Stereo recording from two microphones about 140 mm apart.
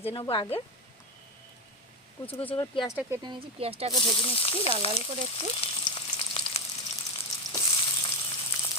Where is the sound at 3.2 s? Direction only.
40° right (ahead or behind).